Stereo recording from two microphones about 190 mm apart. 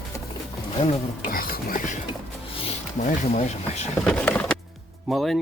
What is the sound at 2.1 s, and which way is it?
Music, 30° left (ahead or behind).